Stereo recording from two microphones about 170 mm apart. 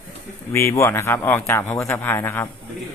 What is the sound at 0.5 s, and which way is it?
Speech, 15° left (ahead or behind).